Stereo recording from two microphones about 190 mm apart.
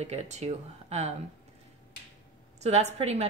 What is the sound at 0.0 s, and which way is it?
A woman's voice, 35° right (ahead or behind).